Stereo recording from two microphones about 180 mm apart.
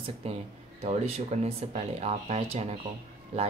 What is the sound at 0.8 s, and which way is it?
Speech, 35° right (ahead or behind).